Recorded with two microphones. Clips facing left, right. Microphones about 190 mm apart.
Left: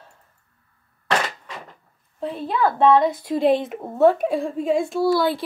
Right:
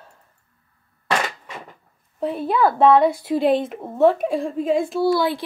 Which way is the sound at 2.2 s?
10° right (ahead or behind).